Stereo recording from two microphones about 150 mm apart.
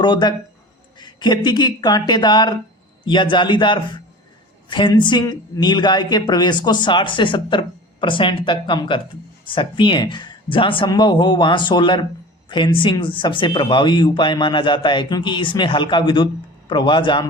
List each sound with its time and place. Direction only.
0.0 s speech: 30° left (ahead or behind)